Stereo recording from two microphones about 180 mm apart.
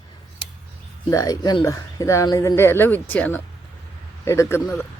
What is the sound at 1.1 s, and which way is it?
Speech, 20° left (ahead or behind).